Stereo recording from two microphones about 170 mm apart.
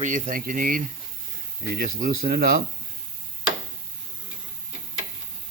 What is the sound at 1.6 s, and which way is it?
Speech, 65° right (ahead or behind).